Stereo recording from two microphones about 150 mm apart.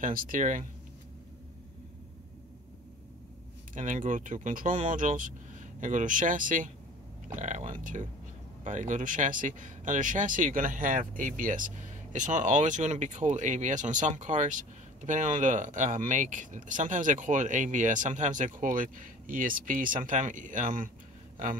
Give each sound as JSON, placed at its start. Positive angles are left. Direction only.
{"t": 0.0, "sound": "speech", "side_deg": -65}
{"t": 3.7, "sound": "speech", "side_deg": -60}
{"t": 7.3, "sound": "a sound", "side_deg": -55}
{"t": 7.8, "sound": "speech", "side_deg": -55}